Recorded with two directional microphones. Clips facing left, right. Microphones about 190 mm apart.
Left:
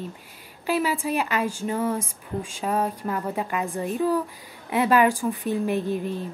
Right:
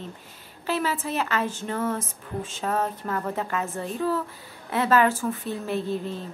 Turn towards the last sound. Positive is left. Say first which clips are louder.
# left 2 dB
turn(degrees=15)  # may be behind; listen again after turning